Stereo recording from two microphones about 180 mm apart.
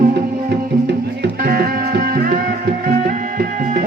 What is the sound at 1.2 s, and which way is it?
Music, 55° right (ahead or behind).